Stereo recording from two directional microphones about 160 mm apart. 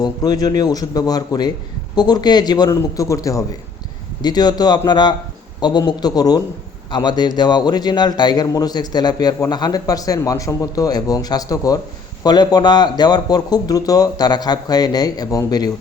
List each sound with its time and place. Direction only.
0.0 s a man's voice: 25° left (ahead or behind)